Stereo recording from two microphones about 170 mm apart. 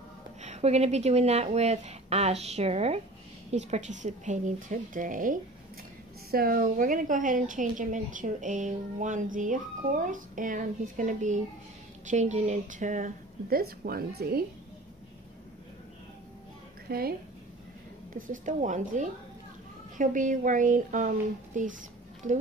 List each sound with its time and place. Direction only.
0.4 s a woman's voice: 40° right (ahead or behind); by 14.4 s 65° right (ahead or behind)
16.9 s a woman's voice: 65° right (ahead or behind)
18.1 s a woman's voice: 50° right (ahead or behind)